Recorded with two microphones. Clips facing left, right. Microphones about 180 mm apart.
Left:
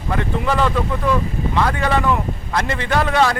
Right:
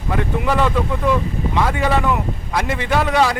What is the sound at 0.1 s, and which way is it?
A man's voice, 5° right (ahead or behind).